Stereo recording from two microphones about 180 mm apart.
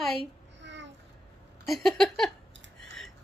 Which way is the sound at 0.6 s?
80° right.